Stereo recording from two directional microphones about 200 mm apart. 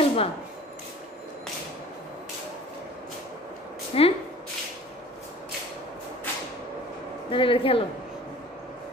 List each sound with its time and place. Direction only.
0.0 s dishes: 30° left (ahead or behind)
3.9 s speech: 30° left (ahead or behind)
7.2 s a woman's voice: 25° left (ahead or behind)